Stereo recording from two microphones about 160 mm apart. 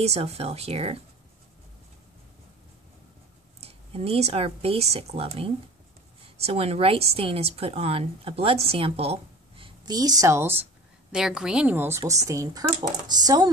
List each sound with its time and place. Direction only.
0.0 s speech: 40° right (ahead or behind)
3.6 s speech: 40° right (ahead or behind)
9.8 s speech: 25° right (ahead or behind)
11.1 s a woman's voice: 5° right (ahead or behind); by 13.5 s 25° right (ahead or behind)